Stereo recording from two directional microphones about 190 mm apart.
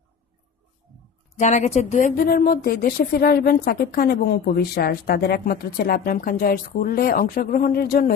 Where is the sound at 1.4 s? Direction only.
35° left (ahead or behind).